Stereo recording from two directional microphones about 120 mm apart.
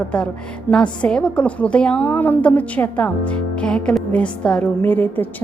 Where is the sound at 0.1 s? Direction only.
10° left (ahead or behind).